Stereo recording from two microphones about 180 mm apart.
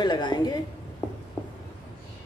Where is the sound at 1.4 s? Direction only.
10° left (ahead or behind).